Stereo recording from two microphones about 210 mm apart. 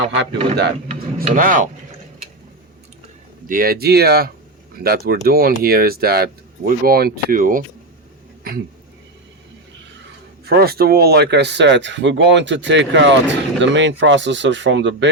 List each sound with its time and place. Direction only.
0.2 s speech: 55° right (ahead or behind)
1.2 s rub: 40° right (ahead or behind)
3.5 s speech: 45° right (ahead or behind)
10.4 s speech: 50° right (ahead or behind)